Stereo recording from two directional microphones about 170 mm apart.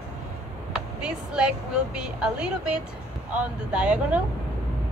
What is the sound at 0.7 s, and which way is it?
A woman's voice, 5° right (ahead or behind).